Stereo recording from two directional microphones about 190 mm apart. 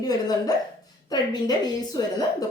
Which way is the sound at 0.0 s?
20° left (ahead or behind).